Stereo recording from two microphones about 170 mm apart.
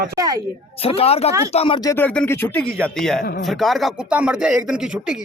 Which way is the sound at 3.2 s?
75° left (ahead or behind).